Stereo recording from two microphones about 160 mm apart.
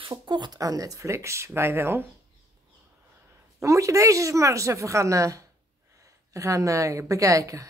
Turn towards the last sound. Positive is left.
turn(degrees=-20)  # may be behind; listen again after turning